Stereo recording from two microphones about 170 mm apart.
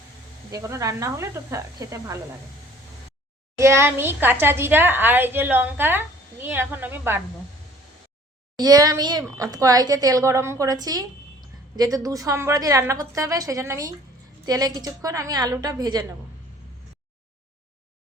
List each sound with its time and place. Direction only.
0.5 s speech: 20° right (ahead or behind)
3.6 s a woman's voice: 15° right (ahead or behind)
8.5 s speech: 25° right (ahead or behind)